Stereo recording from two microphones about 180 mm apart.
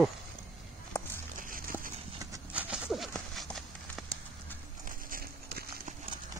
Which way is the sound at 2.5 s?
5° right (ahead or behind).